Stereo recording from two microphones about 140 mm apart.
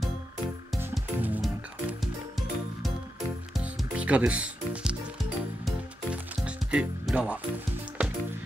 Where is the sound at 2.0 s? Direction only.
Centre (ahead or behind).